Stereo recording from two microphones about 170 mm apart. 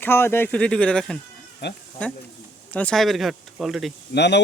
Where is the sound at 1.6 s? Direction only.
80° left.